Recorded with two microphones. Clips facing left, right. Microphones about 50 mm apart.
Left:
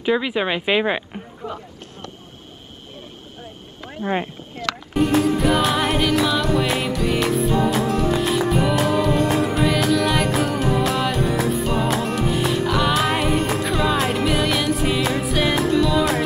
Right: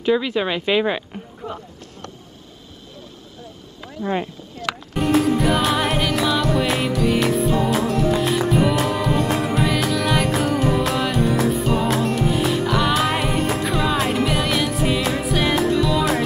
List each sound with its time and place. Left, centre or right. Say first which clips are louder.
0.0 s speech: right 1 dB; centre
1.4 s a sound: even; centre
4.0 s speech: even; left
4.9 s music: even; centre